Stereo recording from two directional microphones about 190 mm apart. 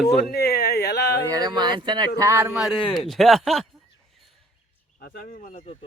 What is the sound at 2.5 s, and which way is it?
Speech, centre (ahead or behind).